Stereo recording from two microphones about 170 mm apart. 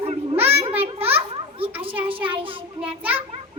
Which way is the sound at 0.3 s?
10° right (ahead or behind).